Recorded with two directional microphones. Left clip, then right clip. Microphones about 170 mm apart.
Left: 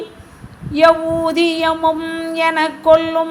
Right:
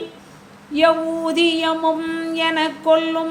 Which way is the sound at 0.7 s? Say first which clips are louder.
Left 4 dB; 10° left (ahead or behind).